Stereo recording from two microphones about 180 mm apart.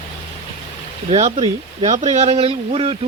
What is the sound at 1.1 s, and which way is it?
Speech, 40° right (ahead or behind).